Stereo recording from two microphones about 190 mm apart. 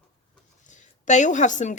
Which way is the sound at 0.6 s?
40° left (ahead or behind).